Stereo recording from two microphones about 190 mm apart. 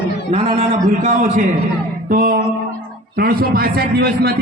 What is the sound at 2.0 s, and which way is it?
Music, 45° right (ahead or behind).